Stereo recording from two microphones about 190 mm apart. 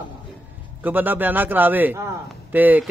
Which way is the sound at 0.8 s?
10° right (ahead or behind).